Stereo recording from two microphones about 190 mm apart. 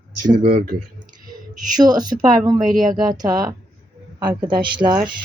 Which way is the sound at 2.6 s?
45° right (ahead or behind).